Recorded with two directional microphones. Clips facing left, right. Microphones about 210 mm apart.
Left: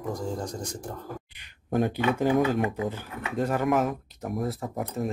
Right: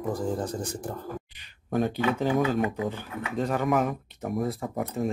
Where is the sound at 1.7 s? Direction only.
15° left (ahead or behind).